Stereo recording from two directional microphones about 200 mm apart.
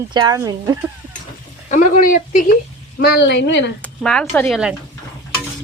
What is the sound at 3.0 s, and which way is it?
Speech, 55° left (ahead or behind).